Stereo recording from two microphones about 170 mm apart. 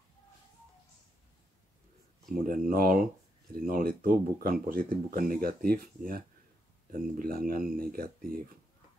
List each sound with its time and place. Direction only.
2.4 s speech: 55° right (ahead or behind)